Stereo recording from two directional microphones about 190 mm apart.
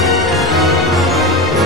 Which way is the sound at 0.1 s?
Centre (ahead or behind).